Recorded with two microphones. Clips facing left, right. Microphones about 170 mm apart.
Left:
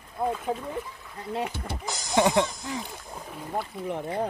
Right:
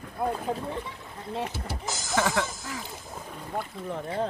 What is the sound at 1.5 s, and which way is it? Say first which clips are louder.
Speech: even; centre (ahead or behind).